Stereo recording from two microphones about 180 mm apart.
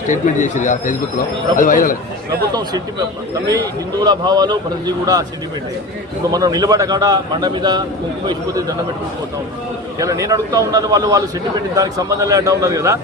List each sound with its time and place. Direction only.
0.1 s a man's voice: 45° left (ahead or behind)
3.5 s a man's voice: 20° right (ahead or behind)
6.3 s a man's voice: 20° right (ahead or behind)
10.0 s a man's voice: 20° right (ahead or behind)